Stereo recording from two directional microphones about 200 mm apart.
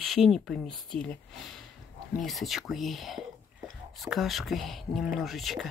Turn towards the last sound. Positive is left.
turn(degrees=0)  # may be behind; listen again after turning